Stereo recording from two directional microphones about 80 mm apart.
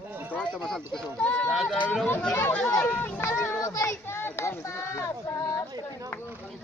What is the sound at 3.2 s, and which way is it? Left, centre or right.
Music, left.